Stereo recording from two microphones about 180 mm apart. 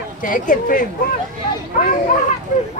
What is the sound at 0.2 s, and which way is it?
Speech, 50° left (ahead or behind).